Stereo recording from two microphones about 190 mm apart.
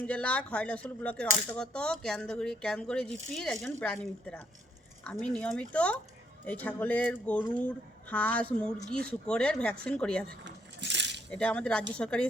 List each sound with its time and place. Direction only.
0.0 s speech: 5° left (ahead or behind)
10.4 s coin: 65° right (ahead or behind)
11.3 s speech: 5° left (ahead or behind)